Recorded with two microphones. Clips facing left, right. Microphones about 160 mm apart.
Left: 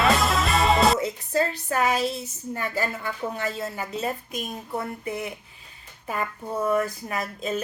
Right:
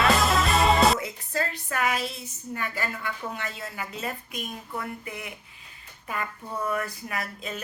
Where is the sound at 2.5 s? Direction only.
35° left (ahead or behind).